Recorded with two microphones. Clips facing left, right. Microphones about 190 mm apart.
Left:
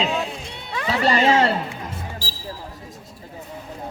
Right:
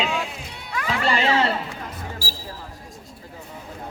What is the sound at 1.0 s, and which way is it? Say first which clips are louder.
Speech: left 4 dB; 45° left (ahead or behind).